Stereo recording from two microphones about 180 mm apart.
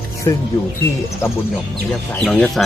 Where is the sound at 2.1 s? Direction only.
5° left (ahead or behind).